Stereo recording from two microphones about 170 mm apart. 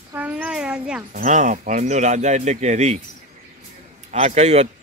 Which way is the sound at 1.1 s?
45° right (ahead or behind).